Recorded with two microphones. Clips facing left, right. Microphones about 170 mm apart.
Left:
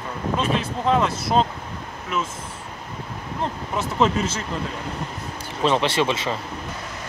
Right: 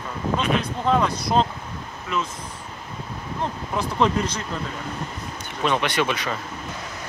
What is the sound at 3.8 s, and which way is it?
Speech, 5° left (ahead or behind).